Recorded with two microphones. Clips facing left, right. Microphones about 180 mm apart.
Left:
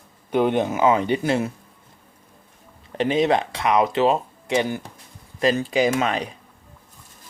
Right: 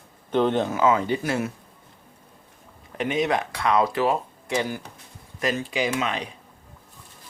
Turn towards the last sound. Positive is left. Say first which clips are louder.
# left 5 dB
turn(degrees=45)  # may be behind; listen again after turning